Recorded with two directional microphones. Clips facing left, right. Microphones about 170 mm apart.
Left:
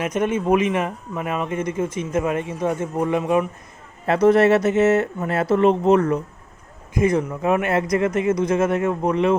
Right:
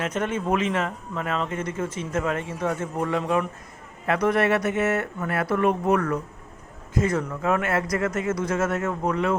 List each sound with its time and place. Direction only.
0.0 s speech: 15° left (ahead or behind)
4.0 s speech: 30° left (ahead or behind)